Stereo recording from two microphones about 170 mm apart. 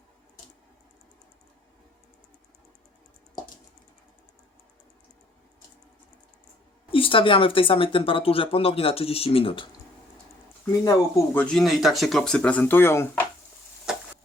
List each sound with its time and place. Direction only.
6.9 s speech: 30° left (ahead or behind)
10.8 s speech: 20° left (ahead or behind)
11.5 s speech: centre (ahead or behind)